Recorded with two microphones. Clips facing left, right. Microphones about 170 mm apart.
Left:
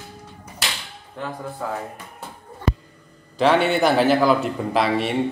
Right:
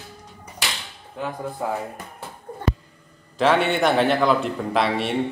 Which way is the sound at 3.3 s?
Centre (ahead or behind).